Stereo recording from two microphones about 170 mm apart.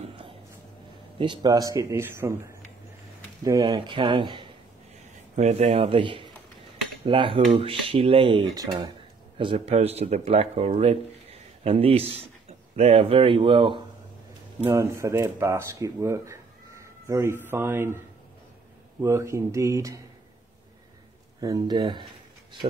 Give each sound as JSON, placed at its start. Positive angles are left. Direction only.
{"t": 1.1, "sound": "a man's voice", "side_deg": -30}
{"t": 5.1, "sound": "speech", "side_deg": -45}
{"t": 9.4, "sound": "speech", "side_deg": -35}
{"t": 14.6, "sound": "speech", "side_deg": -15}
{"t": 21.4, "sound": "a man's voice", "side_deg": -20}